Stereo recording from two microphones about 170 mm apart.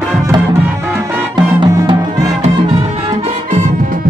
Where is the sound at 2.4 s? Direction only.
40° right (ahead or behind).